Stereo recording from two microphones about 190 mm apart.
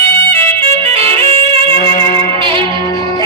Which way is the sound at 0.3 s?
30° right (ahead or behind).